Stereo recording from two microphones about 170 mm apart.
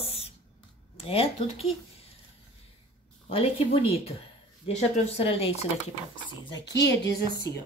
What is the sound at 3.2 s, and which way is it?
Speech, 35° left (ahead or behind).